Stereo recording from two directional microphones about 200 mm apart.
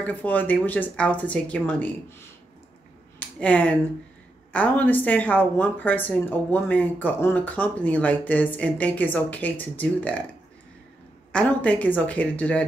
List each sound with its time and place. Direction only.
0.0 s speech: 10° left (ahead or behind)
3.2 s a sound: 5° left (ahead or behind)
4.5 s speech: 5° left (ahead or behind)
11.3 s speech: 5° left (ahead or behind)